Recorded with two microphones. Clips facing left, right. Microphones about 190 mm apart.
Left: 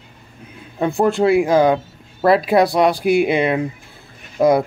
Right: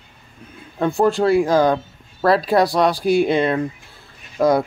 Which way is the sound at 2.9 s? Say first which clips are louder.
Left 1 dB; 60° left (ahead or behind).